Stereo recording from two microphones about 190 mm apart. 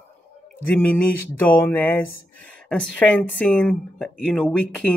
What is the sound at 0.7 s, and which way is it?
Speech, 10° left (ahead or behind).